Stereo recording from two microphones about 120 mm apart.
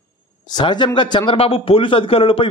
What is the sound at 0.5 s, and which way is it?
Speech, 35° left (ahead or behind).